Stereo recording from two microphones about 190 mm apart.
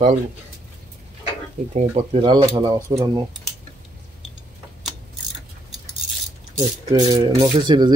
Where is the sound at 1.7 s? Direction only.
35° right (ahead or behind).